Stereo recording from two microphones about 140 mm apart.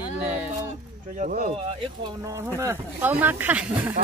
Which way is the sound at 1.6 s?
40° right (ahead or behind).